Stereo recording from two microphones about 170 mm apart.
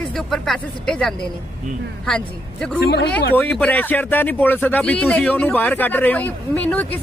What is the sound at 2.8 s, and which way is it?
Speech, 75° left (ahead or behind).